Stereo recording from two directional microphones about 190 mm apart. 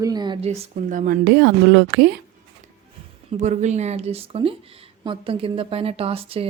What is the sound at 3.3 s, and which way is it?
Speech, 40° right (ahead or behind).